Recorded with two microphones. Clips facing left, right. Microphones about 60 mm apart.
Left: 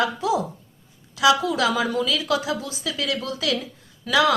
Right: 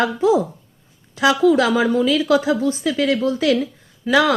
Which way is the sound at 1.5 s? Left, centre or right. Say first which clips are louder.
Right 6 dB; right.